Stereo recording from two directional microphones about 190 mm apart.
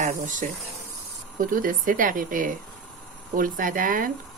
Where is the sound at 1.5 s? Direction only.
45° right (ahead or behind).